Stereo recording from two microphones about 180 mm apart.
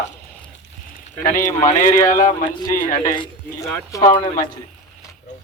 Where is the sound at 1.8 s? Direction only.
50° left (ahead or behind).